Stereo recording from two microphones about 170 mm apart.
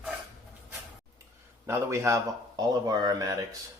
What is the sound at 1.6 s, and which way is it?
A man's voice, 15° right (ahead or behind).